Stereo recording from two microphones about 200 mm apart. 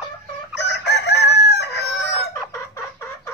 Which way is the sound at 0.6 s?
60° left (ahead or behind).